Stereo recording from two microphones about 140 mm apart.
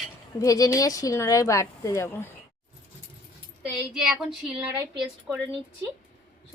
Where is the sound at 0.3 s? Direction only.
25° left (ahead or behind).